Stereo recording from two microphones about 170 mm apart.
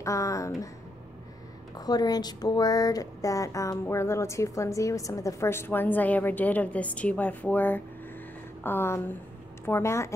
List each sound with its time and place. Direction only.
0.0 s speech: 20° left (ahead or behind)
1.8 s a woman's voice: 25° left (ahead or behind)